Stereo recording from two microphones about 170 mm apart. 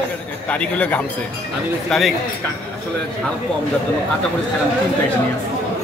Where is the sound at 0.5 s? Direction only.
10° left (ahead or behind).